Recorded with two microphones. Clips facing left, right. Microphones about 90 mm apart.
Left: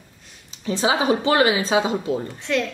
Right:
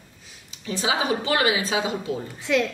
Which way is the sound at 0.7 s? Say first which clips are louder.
Left 4 dB; 35° left (ahead or behind).